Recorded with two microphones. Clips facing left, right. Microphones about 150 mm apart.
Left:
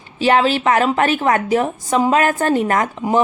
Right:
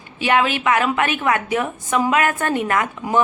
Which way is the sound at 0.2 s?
35° left (ahead or behind).